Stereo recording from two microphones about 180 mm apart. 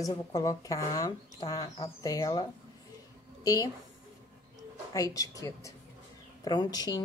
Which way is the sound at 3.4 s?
20° left (ahead or behind).